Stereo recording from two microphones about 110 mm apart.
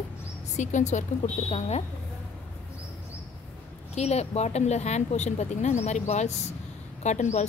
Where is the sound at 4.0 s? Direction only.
85° left.